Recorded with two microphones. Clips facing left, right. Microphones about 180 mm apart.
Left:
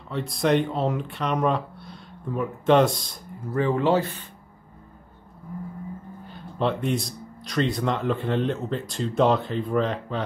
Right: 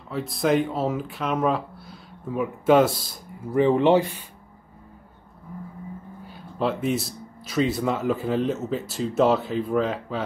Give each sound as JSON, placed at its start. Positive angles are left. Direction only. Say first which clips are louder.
{"t": 0.1, "sound": "speech", "louder": "even", "side_deg": 0}
{"t": 3.5, "sound": "speech", "louder": "right 4 dB", "side_deg": -20}
{"t": 6.2, "sound": "speech", "louder": "even", "side_deg": -5}